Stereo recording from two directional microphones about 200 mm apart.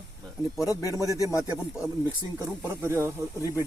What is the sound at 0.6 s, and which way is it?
Speech, 15° left (ahead or behind).